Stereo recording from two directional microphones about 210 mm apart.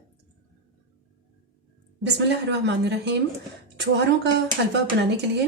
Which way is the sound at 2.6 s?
55° right (ahead or behind).